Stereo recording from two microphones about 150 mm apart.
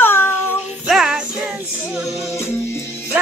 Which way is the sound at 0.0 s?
15° left (ahead or behind).